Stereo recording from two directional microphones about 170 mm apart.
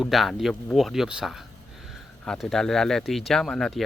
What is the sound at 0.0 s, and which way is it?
Speech, centre (ahead or behind).